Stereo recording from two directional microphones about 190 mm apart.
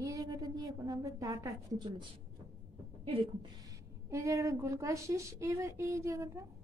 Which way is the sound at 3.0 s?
30° right (ahead or behind).